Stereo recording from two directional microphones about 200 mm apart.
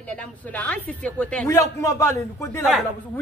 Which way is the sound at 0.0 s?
5° left (ahead or behind).